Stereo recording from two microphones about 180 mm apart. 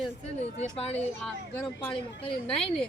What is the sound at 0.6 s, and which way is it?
Speech, 35° left (ahead or behind).